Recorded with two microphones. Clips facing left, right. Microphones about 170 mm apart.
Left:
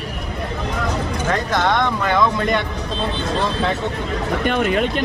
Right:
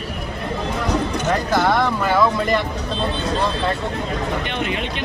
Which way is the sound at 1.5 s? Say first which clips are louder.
Right 1 dB; 5° right (ahead or behind).